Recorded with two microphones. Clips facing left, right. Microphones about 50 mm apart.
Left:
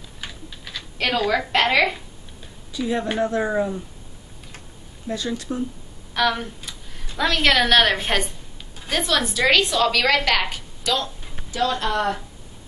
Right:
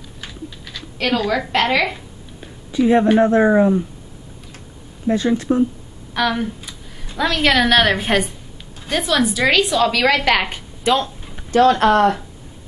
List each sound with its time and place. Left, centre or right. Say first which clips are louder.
0.2 s a sound: right 3 dB; centre
1.5 s a woman's voice: right 1 dB; centre
2.7 s speech: right 10 dB; right
5.0 s speech: right 10 dB; right
6.1 s a woman's voice: right 2 dB; centre
10.8 s speech: right 7 dB; right
11.5 s speech: right 10 dB; right